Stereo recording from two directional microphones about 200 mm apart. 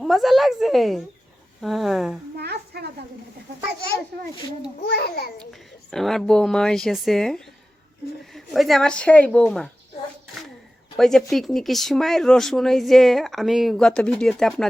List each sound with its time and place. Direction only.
0.0 s speech: centre (ahead or behind)
2.3 s a woman's voice: 55° right (ahead or behind)
4.8 s a child's voice: 55° left (ahead or behind)
5.4 s speech: centre (ahead or behind)
10.9 s speech: centre (ahead or behind)